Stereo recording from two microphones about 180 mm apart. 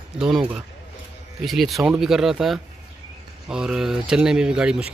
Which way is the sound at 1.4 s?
Centre (ahead or behind).